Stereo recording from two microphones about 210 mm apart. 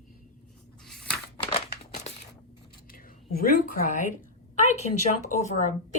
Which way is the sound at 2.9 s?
40° left (ahead or behind).